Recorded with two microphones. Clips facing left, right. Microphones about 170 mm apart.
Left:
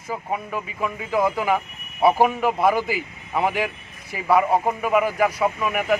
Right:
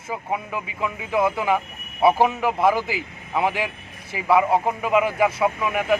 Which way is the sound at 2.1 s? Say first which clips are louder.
Left 1 dB; 10° left (ahead or behind).